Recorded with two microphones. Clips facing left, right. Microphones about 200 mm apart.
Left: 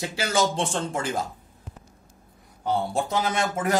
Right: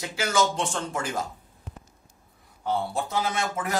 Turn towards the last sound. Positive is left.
turn(degrees=20)  # may be behind; listen again after turning